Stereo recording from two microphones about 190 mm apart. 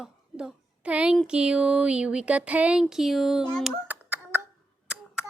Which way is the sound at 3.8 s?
10° right (ahead or behind).